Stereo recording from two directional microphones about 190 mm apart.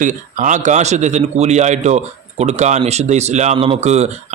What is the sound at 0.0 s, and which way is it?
Speech, 40° right (ahead or behind).